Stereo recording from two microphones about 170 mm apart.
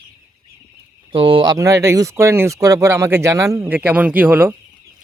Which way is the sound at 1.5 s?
20° right (ahead or behind).